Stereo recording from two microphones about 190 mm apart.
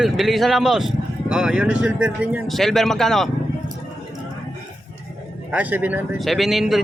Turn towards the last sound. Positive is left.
turn(degrees=0)  # may be behind; listen again after turning